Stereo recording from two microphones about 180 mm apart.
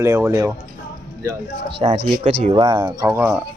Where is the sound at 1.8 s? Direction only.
35° right (ahead or behind); by 3.4 s 15° right (ahead or behind).